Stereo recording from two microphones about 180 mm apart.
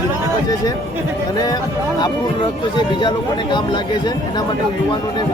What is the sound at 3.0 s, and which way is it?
Speech, 25° left (ahead or behind).